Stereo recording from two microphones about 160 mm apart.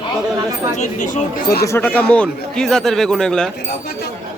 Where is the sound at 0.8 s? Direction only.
50° left (ahead or behind).